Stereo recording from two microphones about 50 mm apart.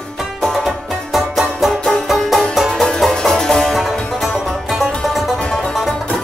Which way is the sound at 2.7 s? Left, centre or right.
Centre.